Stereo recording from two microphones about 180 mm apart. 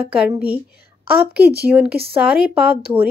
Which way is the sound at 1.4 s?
60° right (ahead or behind).